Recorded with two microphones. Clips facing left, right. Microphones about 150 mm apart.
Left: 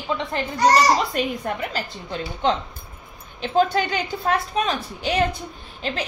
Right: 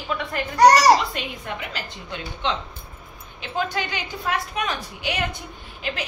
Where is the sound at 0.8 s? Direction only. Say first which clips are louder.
Right 1 dB; 40° left (ahead or behind).